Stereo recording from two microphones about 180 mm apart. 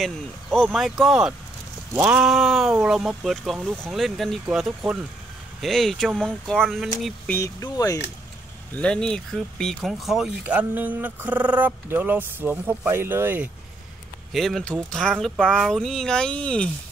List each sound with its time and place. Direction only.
0.0 s speech: centre (ahead or behind)
7.3 s speech: 20° left (ahead or behind)
8.7 s speech: 5° left (ahead or behind); by 13.5 s 10° right (ahead or behind)
14.3 s speech: centre (ahead or behind)